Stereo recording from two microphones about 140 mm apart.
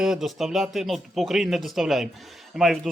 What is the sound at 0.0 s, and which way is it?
A man's voice, 5° right (ahead or behind).